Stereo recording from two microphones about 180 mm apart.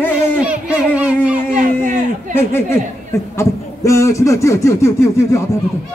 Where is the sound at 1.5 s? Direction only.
40° right (ahead or behind).